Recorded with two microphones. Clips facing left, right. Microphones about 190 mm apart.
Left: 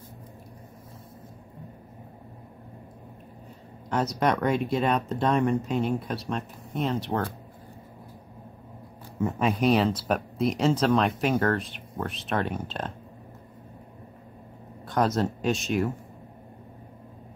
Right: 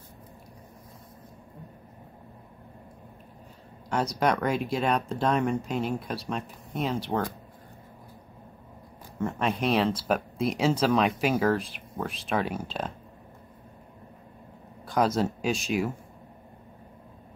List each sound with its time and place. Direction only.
3.9 s speech: centre (ahead or behind)
9.2 s speech: 5° left (ahead or behind)
14.9 s speech: centre (ahead or behind)